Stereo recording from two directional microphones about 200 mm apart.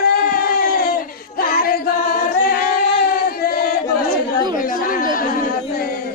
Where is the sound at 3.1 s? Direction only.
45° left (ahead or behind).